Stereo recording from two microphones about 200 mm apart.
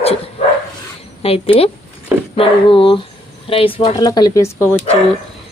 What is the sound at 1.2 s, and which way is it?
Speech, 30° left (ahead or behind).